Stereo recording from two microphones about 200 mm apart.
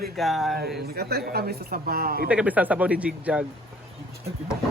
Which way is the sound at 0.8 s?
50° right (ahead or behind).